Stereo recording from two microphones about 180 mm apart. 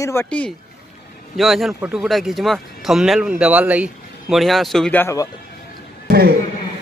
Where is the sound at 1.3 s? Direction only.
Centre (ahead or behind).